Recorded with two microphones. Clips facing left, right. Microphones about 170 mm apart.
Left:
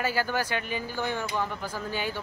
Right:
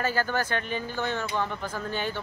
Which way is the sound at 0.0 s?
10° left (ahead or behind).